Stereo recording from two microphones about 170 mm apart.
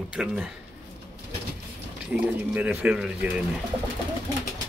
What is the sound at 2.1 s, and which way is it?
Speech, 5° right (ahead or behind).